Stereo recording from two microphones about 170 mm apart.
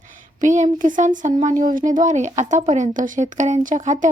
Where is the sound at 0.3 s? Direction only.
45° right (ahead or behind).